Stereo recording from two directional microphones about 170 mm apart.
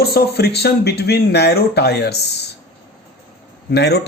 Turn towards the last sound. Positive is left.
turn(degrees=75)  # may be behind; listen again after turning